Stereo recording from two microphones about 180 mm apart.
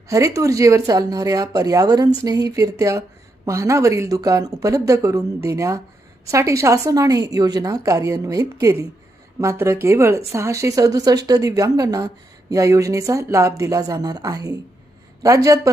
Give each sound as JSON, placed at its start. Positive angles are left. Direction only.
{"t": 0.1, "sound": "a woman's voice", "side_deg": -20}